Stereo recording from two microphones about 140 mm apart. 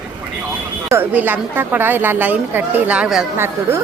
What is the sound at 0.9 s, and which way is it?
A woman's voice, 15° right (ahead or behind).